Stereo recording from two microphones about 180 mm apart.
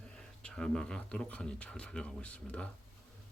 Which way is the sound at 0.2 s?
5° left (ahead or behind).